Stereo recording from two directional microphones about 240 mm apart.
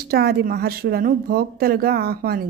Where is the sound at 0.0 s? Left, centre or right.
Right.